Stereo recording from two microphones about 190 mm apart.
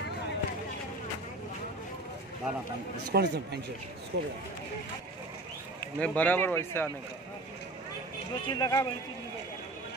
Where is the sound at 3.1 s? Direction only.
60° right (ahead or behind).